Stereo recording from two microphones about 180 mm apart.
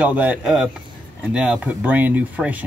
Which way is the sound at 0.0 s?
10° right (ahead or behind).